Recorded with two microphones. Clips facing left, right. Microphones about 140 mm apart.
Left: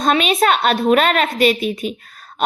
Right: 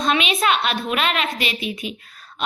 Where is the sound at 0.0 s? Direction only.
45° left (ahead or behind).